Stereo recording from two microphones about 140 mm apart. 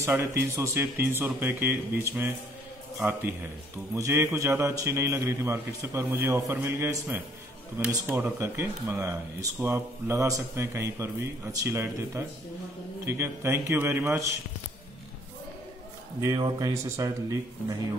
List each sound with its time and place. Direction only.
0.0 s speech: 20° right (ahead or behind)
16.2 s speech: 30° right (ahead or behind)